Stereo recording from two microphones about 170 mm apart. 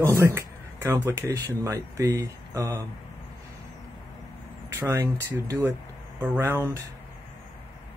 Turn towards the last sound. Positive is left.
turn(degrees=-15)  # may be behind; listen again after turning